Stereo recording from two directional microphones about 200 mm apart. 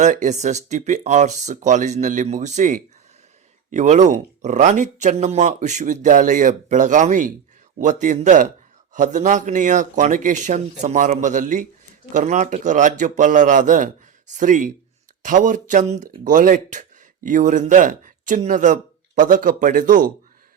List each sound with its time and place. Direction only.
0.0 s speech: 40° right (ahead or behind)